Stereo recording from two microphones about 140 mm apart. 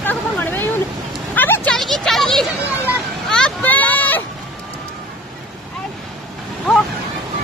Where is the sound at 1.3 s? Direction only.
15° left (ahead or behind).